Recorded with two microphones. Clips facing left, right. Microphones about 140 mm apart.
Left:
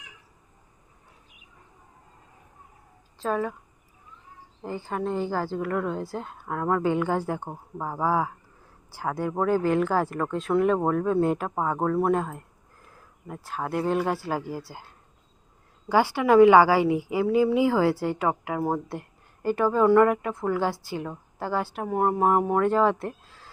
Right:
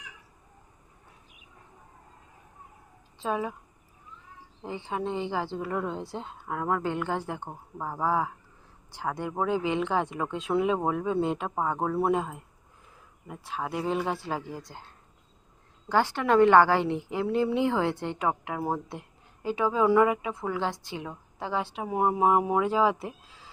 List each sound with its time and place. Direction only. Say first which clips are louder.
3.2 s speech: left 3 dB; 5° right (ahead or behind)
4.6 s a woman's voice: left 2 dB; centre (ahead or behind)
6.8 s a woman's voice: left 5 dB; 10° left (ahead or behind)
15.9 s a woman's voice: left 4 dB; 10° left (ahead or behind)